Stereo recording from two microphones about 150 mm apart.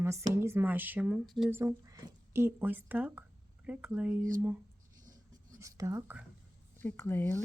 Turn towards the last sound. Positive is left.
turn(degrees=15)  # may be behind; listen again after turning